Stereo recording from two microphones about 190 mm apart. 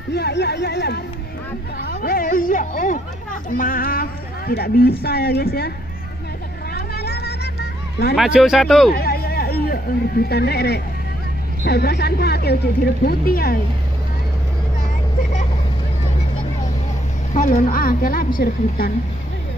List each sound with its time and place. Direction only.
0.1 s speech: 60° left (ahead or behind)
1.8 s speech: 50° left (ahead or behind)
6.7 s vehicle: 55° left (ahead or behind)
8.2 s speech: centre (ahead or behind)
8.9 s a sound: 55° left (ahead or behind)
11.6 s speech: 60° left (ahead or behind)
17.3 s a woman's voice: 45° left (ahead or behind)